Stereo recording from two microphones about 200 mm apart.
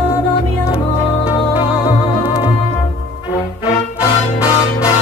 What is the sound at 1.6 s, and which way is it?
Music, 25° left (ahead or behind).